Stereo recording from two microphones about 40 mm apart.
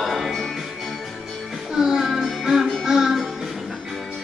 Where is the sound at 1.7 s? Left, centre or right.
Centre.